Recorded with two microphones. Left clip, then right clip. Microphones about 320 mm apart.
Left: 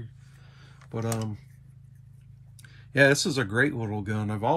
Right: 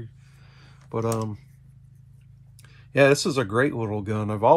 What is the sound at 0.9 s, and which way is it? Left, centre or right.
Speech, centre.